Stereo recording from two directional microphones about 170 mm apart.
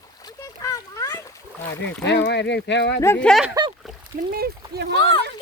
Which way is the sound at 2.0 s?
90° left.